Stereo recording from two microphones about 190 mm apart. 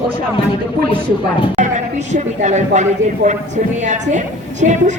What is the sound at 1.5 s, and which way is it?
Speech, 40° right (ahead or behind).